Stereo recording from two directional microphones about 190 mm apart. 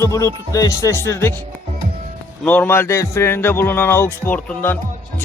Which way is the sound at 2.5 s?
10° left (ahead or behind).